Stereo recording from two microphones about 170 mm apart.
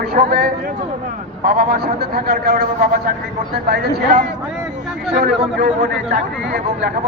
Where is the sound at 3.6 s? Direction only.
70° right (ahead or behind).